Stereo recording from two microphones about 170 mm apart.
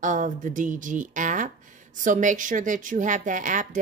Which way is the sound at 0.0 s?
50° right (ahead or behind).